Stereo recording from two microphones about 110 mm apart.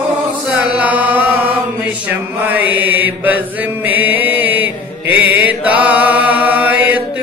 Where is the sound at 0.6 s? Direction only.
10° right (ahead or behind).